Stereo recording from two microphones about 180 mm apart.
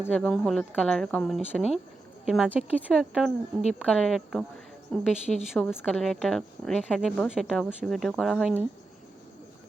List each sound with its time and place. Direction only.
0.0 s speech: 5° left (ahead or behind)